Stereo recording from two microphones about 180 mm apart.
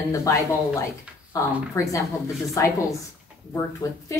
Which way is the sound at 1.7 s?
20° left (ahead or behind).